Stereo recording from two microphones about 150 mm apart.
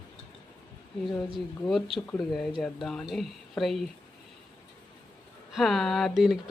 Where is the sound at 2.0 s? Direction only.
5° left (ahead or behind).